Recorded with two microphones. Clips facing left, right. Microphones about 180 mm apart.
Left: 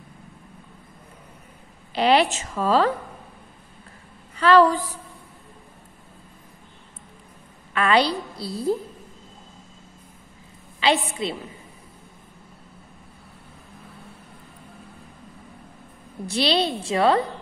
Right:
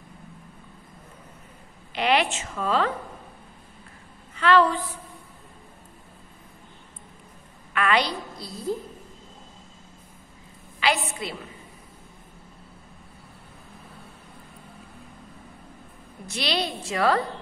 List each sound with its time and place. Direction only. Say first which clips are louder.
2.0 s a woman's voice: left 4 dB; 35° left (ahead or behind)
4.4 s a woman's voice: left 4 dB; 40° left (ahead or behind)
7.7 s a woman's voice: left 4 dB; 30° left (ahead or behind)
10.8 s a woman's voice: left 4 dB; 25° left (ahead or behind)
16.3 s a woman's voice: left 6 dB; 30° left (ahead or behind)